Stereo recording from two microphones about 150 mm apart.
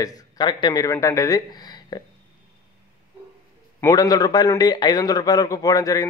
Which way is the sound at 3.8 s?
25° left (ahead or behind).